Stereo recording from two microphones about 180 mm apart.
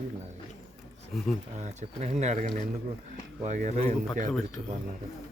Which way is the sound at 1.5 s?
40° right (ahead or behind).